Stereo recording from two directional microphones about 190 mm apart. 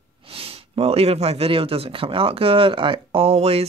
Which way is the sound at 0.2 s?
30° right (ahead or behind).